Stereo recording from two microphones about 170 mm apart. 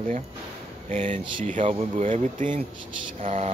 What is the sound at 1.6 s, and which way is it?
Speech, 30° right (ahead or behind).